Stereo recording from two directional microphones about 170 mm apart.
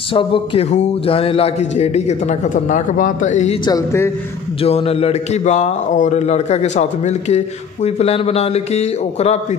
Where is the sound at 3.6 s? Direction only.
20° left (ahead or behind).